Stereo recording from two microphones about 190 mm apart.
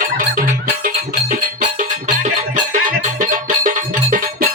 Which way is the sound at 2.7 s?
45° right (ahead or behind).